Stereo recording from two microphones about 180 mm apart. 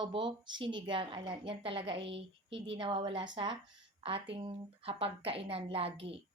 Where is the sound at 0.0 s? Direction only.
25° right (ahead or behind).